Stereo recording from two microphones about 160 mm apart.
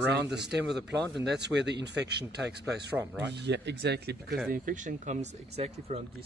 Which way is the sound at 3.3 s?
90° right.